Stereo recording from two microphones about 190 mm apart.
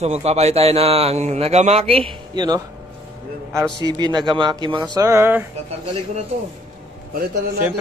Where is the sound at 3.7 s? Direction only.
25° left (ahead or behind).